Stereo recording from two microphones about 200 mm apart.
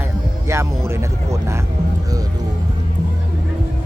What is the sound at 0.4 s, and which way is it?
Music, 15° right (ahead or behind).